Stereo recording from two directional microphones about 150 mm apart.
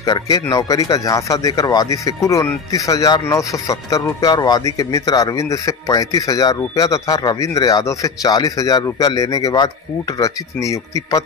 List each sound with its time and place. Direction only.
0.0 s speech: 25° left (ahead or behind)